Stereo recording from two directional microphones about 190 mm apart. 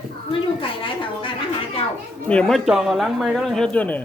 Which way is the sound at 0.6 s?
25° left (ahead or behind).